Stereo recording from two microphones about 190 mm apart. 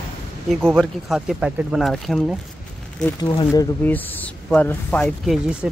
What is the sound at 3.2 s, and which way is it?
Speech, 20° left (ahead or behind).